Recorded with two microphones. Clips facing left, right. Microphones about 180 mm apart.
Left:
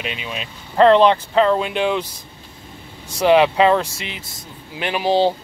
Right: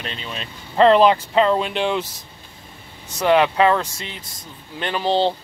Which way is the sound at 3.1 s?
15° left (ahead or behind).